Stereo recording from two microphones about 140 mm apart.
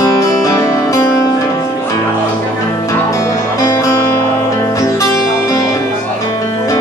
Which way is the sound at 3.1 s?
20° left (ahead or behind).